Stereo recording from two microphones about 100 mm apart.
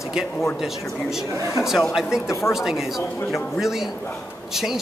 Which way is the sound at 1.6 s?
5° right (ahead or behind).